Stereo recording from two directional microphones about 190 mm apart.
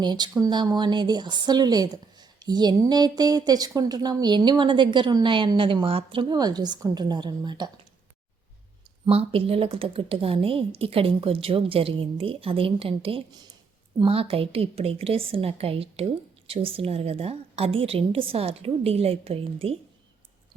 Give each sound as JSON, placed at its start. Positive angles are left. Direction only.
{"t": 0.0, "sound": "speech", "side_deg": -25}
{"t": 9.0, "sound": "a woman's voice", "side_deg": -30}